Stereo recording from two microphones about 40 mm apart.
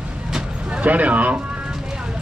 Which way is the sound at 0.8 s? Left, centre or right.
Right.